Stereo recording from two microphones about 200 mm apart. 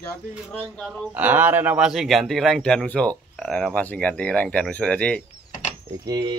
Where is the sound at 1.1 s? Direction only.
10° right (ahead or behind).